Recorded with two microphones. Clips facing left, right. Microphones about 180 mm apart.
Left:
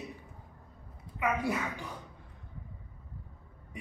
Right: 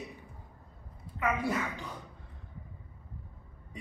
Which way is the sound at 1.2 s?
15° left (ahead or behind).